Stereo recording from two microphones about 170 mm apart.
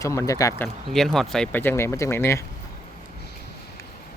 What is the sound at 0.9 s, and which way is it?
Speech, centre (ahead or behind).